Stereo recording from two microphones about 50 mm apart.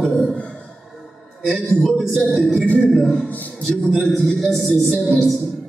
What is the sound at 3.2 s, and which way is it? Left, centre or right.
Speech, left.